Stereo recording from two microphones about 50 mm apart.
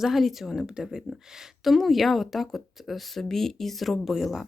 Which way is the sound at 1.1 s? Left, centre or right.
Right.